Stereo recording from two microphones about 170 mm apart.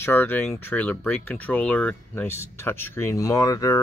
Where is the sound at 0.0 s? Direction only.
10° left (ahead or behind).